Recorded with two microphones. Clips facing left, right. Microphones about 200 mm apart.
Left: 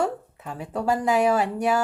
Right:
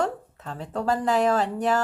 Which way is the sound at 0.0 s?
10° left (ahead or behind).